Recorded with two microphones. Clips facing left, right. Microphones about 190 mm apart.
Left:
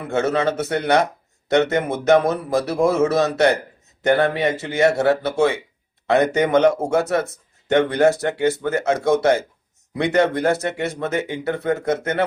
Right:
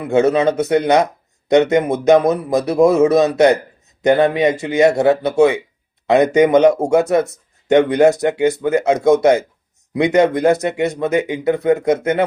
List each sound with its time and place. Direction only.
0.1 s speech: 15° right (ahead or behind)